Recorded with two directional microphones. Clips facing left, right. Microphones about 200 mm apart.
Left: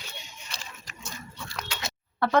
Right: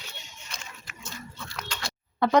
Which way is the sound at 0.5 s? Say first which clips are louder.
Even; 35° left (ahead or behind).